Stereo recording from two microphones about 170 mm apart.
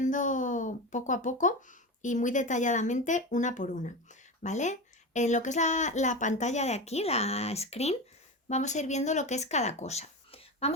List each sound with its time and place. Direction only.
0.0 s speech: 50° left (ahead or behind)